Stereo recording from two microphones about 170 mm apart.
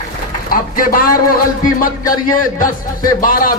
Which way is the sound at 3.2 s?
55° left (ahead or behind).